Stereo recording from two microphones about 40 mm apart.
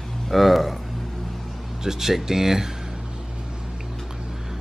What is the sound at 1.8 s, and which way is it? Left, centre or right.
Speech, centre.